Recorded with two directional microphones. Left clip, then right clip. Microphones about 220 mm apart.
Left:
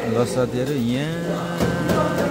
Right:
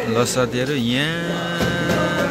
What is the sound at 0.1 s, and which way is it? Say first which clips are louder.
A man's voice: right 2 dB; centre (ahead or behind).